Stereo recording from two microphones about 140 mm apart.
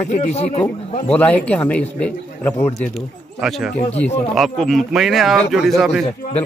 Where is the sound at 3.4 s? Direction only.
Centre (ahead or behind).